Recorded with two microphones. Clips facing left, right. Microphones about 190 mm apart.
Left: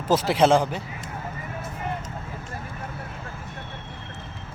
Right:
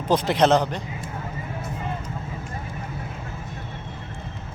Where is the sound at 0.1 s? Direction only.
5° left (ahead or behind).